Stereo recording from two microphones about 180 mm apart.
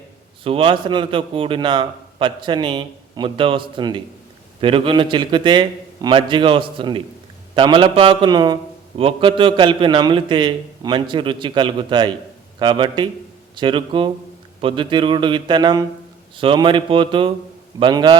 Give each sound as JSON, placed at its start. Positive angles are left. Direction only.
{"t": 0.4, "sound": "a man's voice", "side_deg": -30}